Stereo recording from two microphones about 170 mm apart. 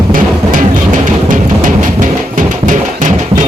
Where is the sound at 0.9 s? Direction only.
50° right (ahead or behind).